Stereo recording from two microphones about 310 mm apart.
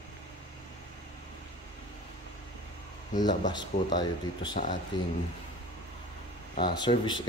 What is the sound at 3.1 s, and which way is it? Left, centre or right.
Speech, centre.